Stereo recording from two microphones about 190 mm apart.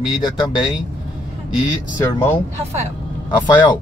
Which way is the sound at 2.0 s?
15° left (ahead or behind).